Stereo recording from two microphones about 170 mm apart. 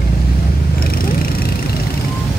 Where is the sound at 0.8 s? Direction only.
60° left (ahead or behind).